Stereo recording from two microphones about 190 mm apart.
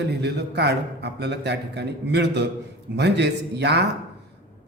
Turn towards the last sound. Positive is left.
turn(degrees=-65)  # may be behind; listen again after turning